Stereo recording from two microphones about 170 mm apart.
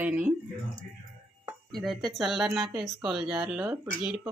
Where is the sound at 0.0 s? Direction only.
5° right (ahead or behind).